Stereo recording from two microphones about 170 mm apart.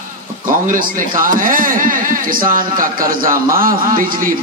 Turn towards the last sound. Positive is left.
turn(degrees=-55)  # may be behind; listen again after turning